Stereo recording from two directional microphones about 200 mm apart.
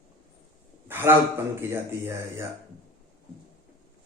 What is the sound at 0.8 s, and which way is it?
A man's voice, 10° right (ahead or behind).